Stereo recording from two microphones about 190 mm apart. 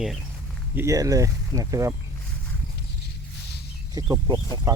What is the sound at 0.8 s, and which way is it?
Speech, 15° right (ahead or behind).